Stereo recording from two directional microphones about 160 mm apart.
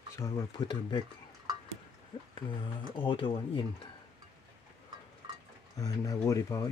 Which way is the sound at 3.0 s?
30° left (ahead or behind).